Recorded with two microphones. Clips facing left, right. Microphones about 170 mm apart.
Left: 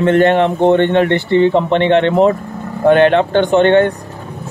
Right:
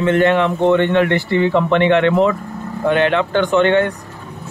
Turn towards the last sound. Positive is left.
turn(degrees=30)  # may be behind; listen again after turning